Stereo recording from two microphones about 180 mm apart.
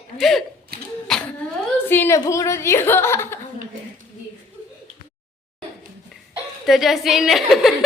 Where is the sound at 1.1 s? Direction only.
Centre (ahead or behind).